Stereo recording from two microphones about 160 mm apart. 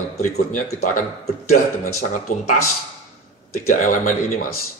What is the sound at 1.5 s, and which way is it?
Speech, 70° left (ahead or behind).